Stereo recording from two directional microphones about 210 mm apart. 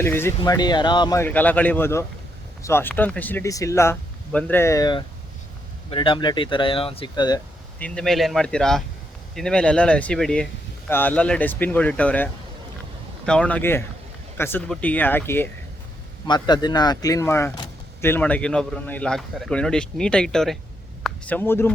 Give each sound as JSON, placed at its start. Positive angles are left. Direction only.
{"t": 0.0, "sound": "speech", "side_deg": 10}
{"t": 7.8, "sound": "speech", "side_deg": 5}
{"t": 16.2, "sound": "speech", "side_deg": 20}